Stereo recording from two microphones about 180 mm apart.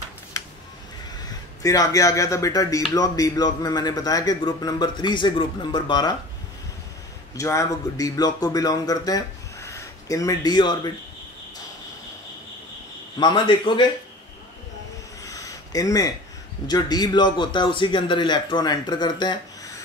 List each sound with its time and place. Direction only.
1.6 s speech: 20° left (ahead or behind)
7.3 s speech: 15° left (ahead or behind)
13.2 s speech: 25° left (ahead or behind)
15.2 s a sound: 20° left (ahead or behind)
16.6 s speech: 20° left (ahead or behind)